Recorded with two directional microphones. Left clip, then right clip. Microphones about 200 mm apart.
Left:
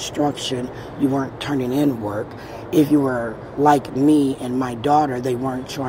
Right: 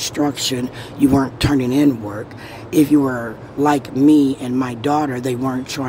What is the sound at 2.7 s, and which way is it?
Speech, 15° right (ahead or behind).